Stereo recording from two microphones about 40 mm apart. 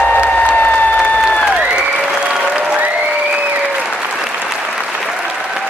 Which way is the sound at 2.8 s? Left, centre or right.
Right.